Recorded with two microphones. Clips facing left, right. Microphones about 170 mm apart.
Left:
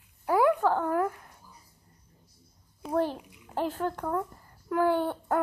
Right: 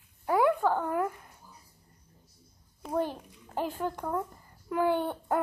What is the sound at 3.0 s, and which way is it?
Speech, 10° left (ahead or behind).